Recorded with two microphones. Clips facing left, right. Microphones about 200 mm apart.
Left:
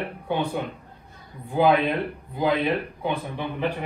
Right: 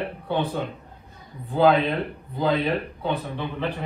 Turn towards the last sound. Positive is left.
turn(degrees=10)  # may be behind; listen again after turning